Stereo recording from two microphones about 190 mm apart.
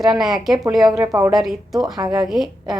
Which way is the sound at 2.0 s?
20° right (ahead or behind).